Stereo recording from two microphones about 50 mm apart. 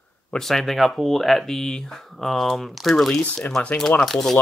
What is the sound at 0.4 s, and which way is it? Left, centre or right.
Speech, centre.